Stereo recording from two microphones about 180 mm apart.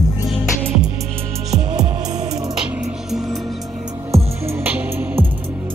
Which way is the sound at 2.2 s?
20° right (ahead or behind).